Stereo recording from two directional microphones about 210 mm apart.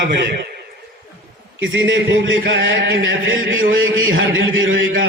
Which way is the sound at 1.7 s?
60° right (ahead or behind).